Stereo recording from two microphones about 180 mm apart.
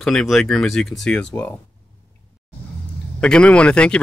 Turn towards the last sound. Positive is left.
turn(degrees=5)  # may be behind; listen again after turning